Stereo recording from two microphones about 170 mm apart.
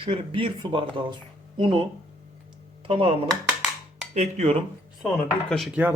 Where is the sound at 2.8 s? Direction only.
35° right (ahead or behind).